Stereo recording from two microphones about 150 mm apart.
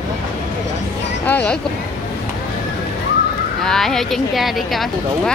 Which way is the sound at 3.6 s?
Centre (ahead or behind).